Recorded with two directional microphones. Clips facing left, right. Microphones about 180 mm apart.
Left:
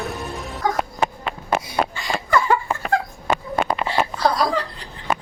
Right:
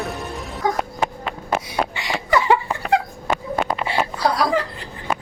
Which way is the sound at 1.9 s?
70° right (ahead or behind).